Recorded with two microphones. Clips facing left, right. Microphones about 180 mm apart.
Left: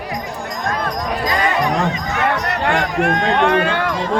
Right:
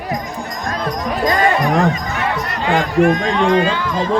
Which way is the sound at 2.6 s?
60° left (ahead or behind).